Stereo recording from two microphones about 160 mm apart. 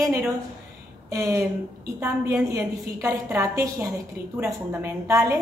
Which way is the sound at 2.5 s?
20° right (ahead or behind).